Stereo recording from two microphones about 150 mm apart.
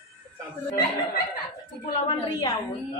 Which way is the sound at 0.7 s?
80° left.